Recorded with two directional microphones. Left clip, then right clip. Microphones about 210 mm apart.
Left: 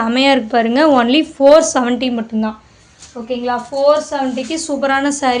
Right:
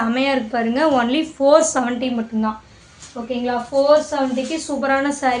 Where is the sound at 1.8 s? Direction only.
55° left (ahead or behind).